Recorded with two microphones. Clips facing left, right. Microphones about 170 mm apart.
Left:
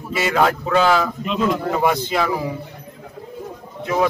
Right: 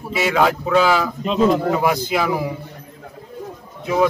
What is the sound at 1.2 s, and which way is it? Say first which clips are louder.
Speech: right 4 dB; 35° right (ahead or behind).